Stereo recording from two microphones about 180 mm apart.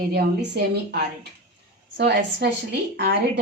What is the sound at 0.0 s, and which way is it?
A woman's voice, 60° right (ahead or behind).